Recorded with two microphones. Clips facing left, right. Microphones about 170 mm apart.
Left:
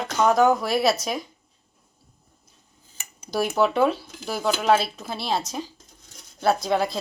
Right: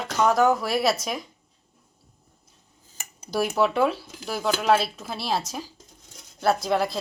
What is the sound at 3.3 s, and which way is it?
Speech, centre (ahead or behind).